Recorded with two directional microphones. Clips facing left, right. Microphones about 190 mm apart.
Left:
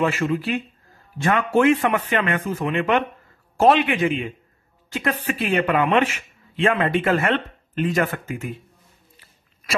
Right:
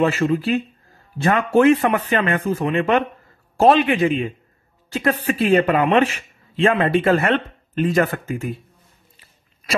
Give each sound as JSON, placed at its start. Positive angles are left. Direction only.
{"t": 0.0, "sound": "speech", "side_deg": -30}